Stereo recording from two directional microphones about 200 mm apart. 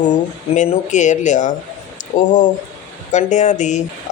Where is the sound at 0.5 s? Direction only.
35° left (ahead or behind).